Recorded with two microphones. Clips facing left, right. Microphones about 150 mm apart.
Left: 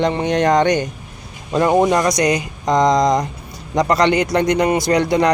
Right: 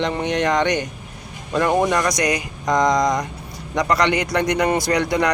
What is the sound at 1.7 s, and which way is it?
Speech, 20° left (ahead or behind).